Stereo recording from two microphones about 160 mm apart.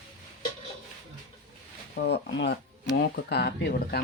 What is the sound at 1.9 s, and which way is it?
Speech, 90° left.